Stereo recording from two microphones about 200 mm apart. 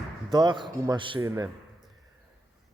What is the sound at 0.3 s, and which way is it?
A man's voice, 20° right (ahead or behind).